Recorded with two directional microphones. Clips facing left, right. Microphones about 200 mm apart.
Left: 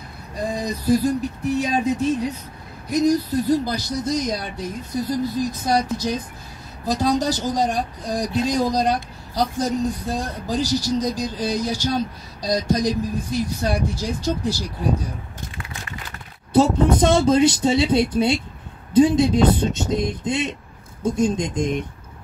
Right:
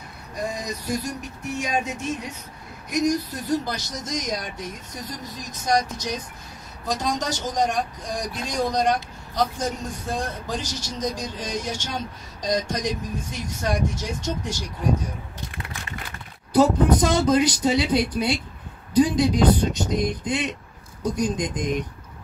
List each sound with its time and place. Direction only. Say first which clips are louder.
0.5 s speech: left 10 dB; 35° left (ahead or behind)
16.5 s speech: left 1 dB; 25° left (ahead or behind)